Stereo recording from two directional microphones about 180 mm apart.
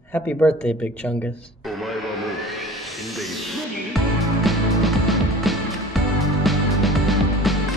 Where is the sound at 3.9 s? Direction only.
Centre (ahead or behind).